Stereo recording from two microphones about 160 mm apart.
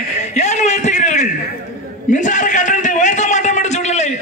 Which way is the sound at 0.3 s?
45° left (ahead or behind).